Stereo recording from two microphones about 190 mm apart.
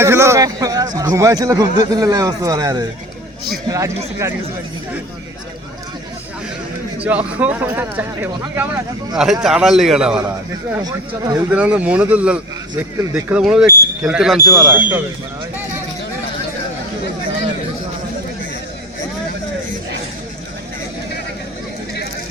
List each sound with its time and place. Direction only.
0.0 s a sound: 15° right (ahead or behind)
0.9 s speech: 15° right (ahead or behind)
7.3 s speech: 10° right (ahead or behind)
10.2 s speech: 15° right (ahead or behind)
11.5 s speech: 5° right (ahead or behind)